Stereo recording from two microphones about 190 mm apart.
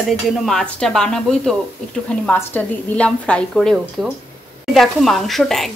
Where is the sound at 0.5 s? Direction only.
5° left (ahead or behind).